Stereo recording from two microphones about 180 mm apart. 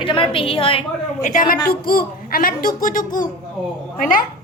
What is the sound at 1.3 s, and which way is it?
A woman's voice, 45° left (ahead or behind).